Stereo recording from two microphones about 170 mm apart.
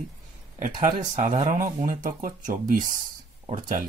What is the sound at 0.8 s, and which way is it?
Speech, 50° right (ahead or behind).